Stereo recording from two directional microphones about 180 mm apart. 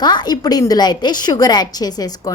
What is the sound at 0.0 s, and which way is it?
A woman's voice, 25° left (ahead or behind).